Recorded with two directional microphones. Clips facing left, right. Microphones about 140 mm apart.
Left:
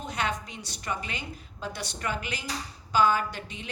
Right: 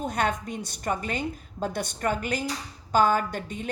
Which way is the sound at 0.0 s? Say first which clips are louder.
Right 5 dB; 50° right (ahead or behind).